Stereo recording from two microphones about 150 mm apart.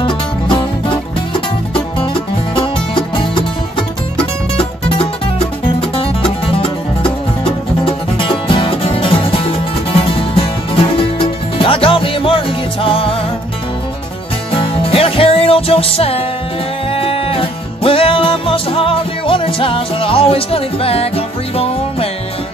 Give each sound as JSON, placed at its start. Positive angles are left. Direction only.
{"t": 0.0, "sound": "music", "side_deg": 35}
{"t": 2.5, "sound": "music", "side_deg": 35}
{"t": 4.6, "sound": "music", "side_deg": 40}
{"t": 7.8, "sound": "music", "side_deg": 35}
{"t": 14.6, "sound": "music", "side_deg": 40}